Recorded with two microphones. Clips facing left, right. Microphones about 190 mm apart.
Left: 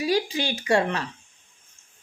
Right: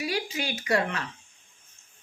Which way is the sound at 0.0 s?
30° left (ahead or behind).